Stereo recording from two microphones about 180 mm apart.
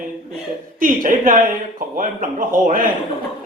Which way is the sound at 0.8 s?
50° right (ahead or behind).